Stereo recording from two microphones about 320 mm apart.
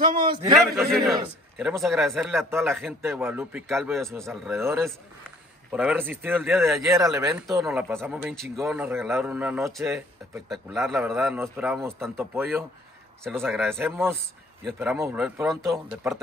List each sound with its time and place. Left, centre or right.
0.0 s a man's voice: right
0.3 s a man's voice: centre
0.6 s speech: centre